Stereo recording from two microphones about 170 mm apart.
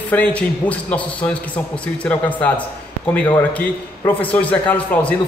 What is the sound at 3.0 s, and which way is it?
A man's voice, 10° left (ahead or behind).